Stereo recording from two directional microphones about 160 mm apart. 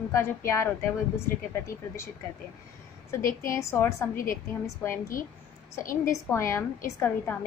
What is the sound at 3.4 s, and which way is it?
Speech, 15° left (ahead or behind).